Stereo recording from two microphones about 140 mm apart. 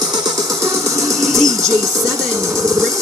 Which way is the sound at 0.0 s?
30° right (ahead or behind).